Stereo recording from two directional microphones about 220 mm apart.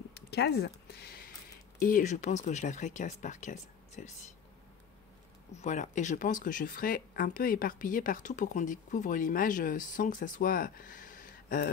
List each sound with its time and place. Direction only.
0.1 s speech: 50° left (ahead or behind)
5.6 s speech: 35° left (ahead or behind)